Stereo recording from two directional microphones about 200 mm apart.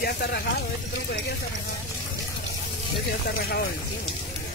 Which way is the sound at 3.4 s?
50° left (ahead or behind).